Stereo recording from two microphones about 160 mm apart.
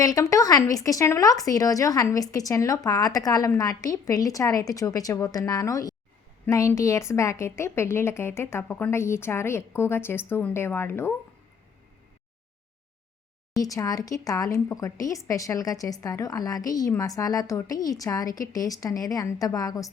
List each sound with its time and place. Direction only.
0.0 s a woman's voice: 20° left (ahead or behind)
13.6 s speech: 20° left (ahead or behind)